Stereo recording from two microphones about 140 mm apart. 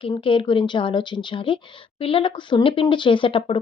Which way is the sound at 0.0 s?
40° left (ahead or behind).